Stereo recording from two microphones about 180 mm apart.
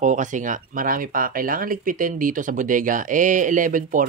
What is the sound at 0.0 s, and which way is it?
Speech, 45° right (ahead or behind).